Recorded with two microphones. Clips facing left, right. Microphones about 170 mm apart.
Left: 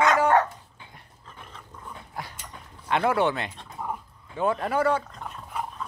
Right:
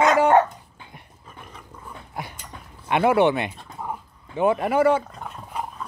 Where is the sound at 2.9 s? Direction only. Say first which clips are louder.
Right 5 dB; 10° right (ahead or behind).